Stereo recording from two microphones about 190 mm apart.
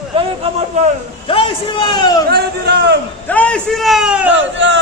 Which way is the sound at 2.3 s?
55° right (ahead or behind).